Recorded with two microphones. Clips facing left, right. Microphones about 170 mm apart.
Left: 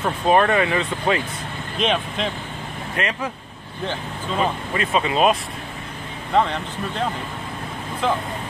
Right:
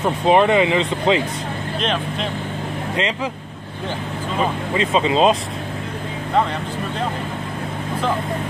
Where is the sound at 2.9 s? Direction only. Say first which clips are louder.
Right 2 dB; 20° right (ahead or behind).